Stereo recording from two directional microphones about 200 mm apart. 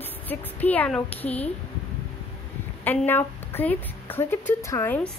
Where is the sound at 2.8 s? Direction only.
10° left (ahead or behind).